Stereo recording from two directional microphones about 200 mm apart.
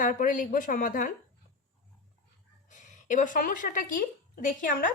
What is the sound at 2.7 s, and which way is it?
A woman's voice, 40° left (ahead or behind).